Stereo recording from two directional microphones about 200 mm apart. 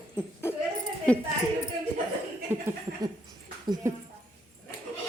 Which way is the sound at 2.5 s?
10° right (ahead or behind).